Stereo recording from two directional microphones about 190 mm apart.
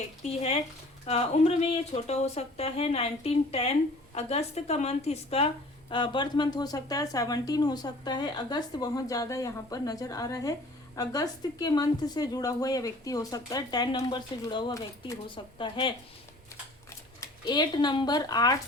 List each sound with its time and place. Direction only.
1.0 s a woman's voice: 35° left (ahead or behind)
17.2 s speech: 20° left (ahead or behind)